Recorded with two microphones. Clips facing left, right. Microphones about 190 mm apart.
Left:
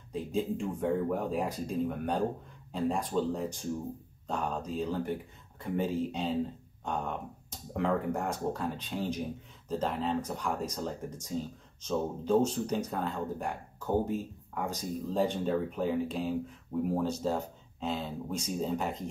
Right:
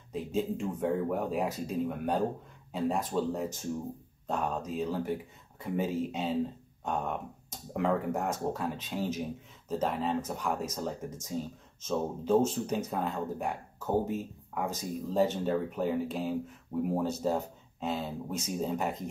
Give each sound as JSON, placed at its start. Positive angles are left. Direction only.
{"t": 0.1, "sound": "speech", "side_deg": -5}